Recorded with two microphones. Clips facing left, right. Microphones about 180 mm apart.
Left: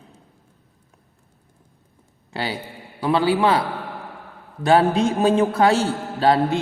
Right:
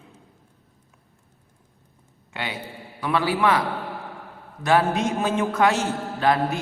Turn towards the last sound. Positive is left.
turn(degrees=30)  # may be behind; listen again after turning